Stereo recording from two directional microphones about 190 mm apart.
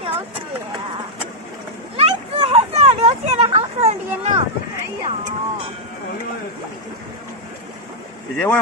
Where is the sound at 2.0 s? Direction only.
30° right (ahead or behind).